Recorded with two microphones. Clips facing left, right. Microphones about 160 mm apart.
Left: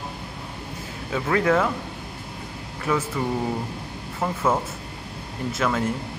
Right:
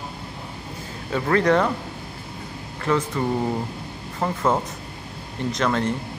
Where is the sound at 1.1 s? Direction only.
5° left (ahead or behind).